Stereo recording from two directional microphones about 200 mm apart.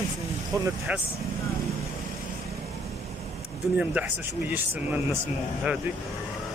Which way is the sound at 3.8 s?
5° right (ahead or behind).